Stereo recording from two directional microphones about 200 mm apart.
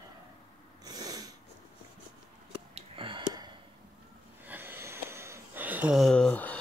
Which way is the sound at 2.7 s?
25° right (ahead or behind).